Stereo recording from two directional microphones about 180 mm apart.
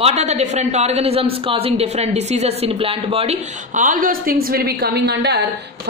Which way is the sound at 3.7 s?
45° right (ahead or behind).